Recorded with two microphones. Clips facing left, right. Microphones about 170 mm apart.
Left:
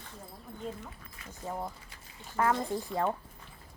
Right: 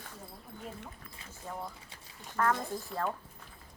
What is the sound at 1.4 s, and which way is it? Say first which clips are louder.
Speech: left 4 dB; 30° left (ahead or behind).